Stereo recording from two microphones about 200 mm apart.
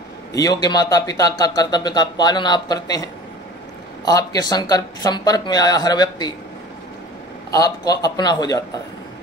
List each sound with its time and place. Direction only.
0.3 s speech: 20° left (ahead or behind)
7.5 s speech: 20° left (ahead or behind)